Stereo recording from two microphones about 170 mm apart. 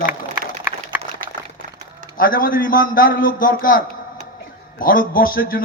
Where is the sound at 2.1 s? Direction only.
55° left (ahead or behind).